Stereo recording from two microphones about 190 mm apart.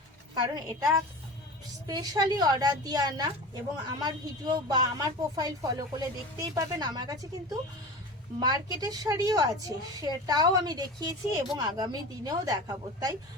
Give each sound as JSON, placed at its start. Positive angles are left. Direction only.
{"t": 0.3, "sound": "a woman's voice", "side_deg": -20}
{"t": 8.4, "sound": "a woman's voice", "side_deg": -20}